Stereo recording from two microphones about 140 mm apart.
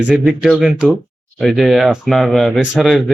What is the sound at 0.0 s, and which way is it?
Speech, 10° right (ahead or behind).